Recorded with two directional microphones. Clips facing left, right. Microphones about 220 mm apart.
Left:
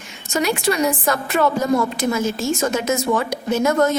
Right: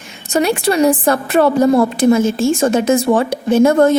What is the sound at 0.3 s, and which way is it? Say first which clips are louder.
Speech: right 5 dB; 35° right (ahead or behind).